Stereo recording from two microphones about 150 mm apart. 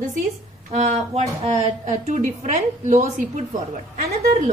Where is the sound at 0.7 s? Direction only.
50° right (ahead or behind).